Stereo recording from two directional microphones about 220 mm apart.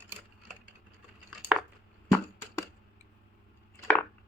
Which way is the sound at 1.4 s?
5° right (ahead or behind).